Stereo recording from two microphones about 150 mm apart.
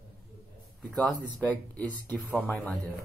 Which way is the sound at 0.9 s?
5° left (ahead or behind).